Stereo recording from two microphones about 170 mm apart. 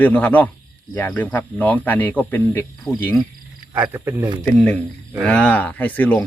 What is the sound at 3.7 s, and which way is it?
Speech, 10° right (ahead or behind).